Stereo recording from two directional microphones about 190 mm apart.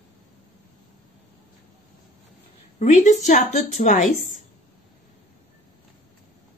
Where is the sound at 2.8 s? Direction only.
35° left (ahead or behind).